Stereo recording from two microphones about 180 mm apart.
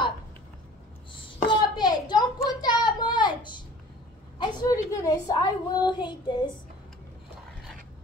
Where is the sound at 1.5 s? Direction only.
25° left (ahead or behind).